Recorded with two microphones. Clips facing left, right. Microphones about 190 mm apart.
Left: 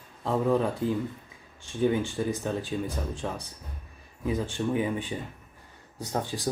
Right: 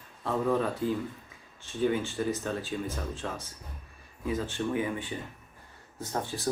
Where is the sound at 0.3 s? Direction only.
15° left (ahead or behind).